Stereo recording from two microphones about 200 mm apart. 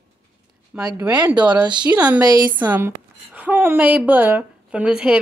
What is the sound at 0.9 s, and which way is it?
Speech, 10° right (ahead or behind).